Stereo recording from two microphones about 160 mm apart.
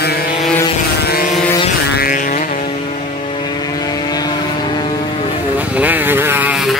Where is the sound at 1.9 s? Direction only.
65° left (ahead or behind).